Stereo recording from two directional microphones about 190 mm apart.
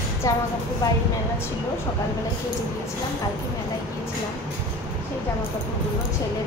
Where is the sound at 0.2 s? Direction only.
15° left (ahead or behind).